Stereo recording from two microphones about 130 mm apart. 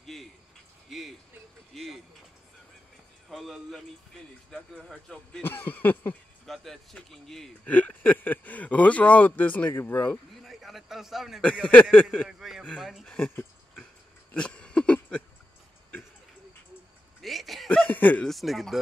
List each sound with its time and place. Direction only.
0.0 s a sound: centre (ahead or behind)
3.3 s speech: centre (ahead or behind); by 6.1 s 15° left (ahead or behind)
6.4 s speech: centre (ahead or behind)
7.6 s speech: 15° left (ahead or behind)
10.4 s a man's voice: centre (ahead or behind)
11.6 s speech: 10° left (ahead or behind)
12.3 s speech: 5° right (ahead or behind)
14.3 s a sound: 10° left (ahead or behind)
17.2 s a sound: centre (ahead or behind)
17.6 s speech: 10° left (ahead or behind)
18.3 s speech: centre (ahead or behind)